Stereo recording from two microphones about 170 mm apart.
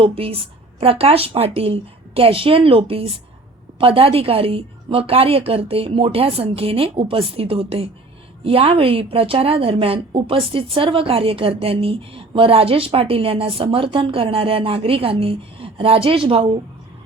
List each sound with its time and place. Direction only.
0.0 s speech: 35° right (ahead or behind)